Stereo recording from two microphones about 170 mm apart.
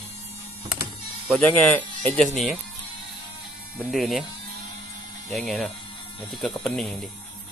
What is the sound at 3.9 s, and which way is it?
Speech, centre (ahead or behind).